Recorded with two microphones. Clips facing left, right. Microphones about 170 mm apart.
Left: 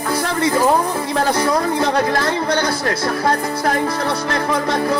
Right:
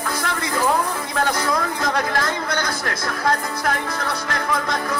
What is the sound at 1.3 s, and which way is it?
Speech, 30° left (ahead or behind).